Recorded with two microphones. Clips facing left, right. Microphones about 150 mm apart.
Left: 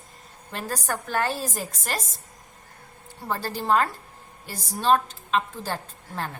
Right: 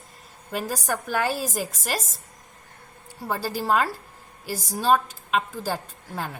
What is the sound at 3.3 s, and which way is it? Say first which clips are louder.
A woman's voice: even; 10° right (ahead or behind).